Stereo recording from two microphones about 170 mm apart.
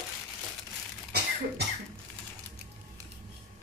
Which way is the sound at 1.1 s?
65° right (ahead or behind).